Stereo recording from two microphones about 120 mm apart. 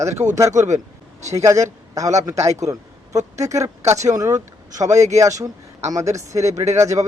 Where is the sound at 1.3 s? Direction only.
25° right (ahead or behind).